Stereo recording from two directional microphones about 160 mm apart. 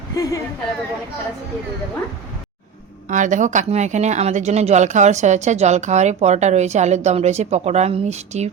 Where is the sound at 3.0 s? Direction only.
50° right (ahead or behind).